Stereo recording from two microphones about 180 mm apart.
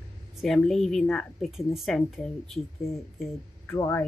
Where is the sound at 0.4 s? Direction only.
Centre (ahead or behind).